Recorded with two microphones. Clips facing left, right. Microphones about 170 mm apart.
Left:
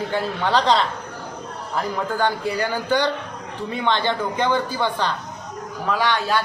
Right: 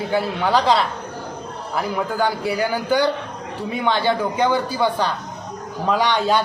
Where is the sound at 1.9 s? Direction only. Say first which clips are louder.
Right 1 dB; 10° right (ahead or behind).